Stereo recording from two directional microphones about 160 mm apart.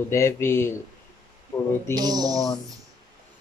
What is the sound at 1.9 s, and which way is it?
Speech, 25° right (ahead or behind).